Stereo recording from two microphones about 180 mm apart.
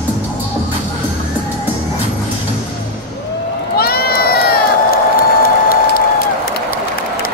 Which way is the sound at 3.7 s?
60° left (ahead or behind).